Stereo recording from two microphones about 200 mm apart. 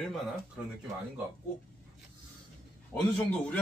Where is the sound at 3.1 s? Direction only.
5° left (ahead or behind).